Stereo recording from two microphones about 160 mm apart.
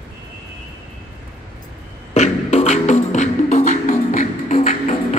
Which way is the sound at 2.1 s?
45° left (ahead or behind).